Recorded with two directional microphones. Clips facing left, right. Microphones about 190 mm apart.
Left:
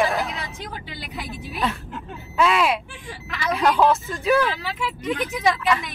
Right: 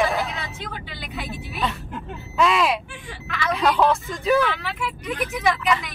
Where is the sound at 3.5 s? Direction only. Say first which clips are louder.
Left 1 dB; centre (ahead or behind).